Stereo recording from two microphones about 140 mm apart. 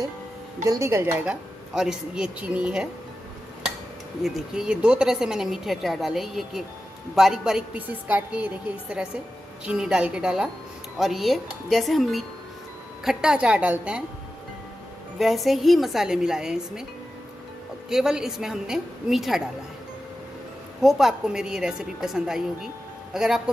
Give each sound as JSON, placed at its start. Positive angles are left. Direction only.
{"t": 0.7, "sound": "a woman's voice", "side_deg": -20}
{"t": 1.2, "sound": "speech", "side_deg": -5}
{"t": 4.2, "sound": "a woman's voice", "side_deg": -5}
{"t": 15.1, "sound": "speech", "side_deg": 0}
{"t": 17.8, "sound": "speech", "side_deg": -5}
{"t": 20.8, "sound": "speech", "side_deg": -5}